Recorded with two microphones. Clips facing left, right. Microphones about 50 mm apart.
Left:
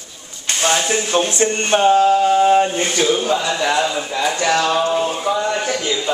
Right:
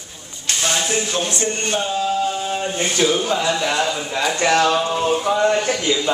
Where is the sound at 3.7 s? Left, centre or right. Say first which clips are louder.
Left 2 dB; centre.